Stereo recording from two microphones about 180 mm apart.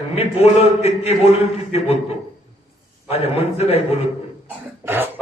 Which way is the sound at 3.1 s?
35° left (ahead or behind).